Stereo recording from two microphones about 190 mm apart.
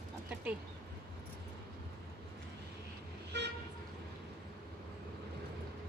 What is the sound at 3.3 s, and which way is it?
Toot, 60° right (ahead or behind).